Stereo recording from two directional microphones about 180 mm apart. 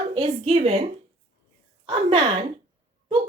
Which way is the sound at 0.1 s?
30° right (ahead or behind).